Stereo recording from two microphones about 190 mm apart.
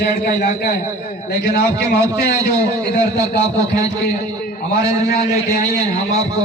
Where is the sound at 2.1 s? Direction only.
15° right (ahead or behind).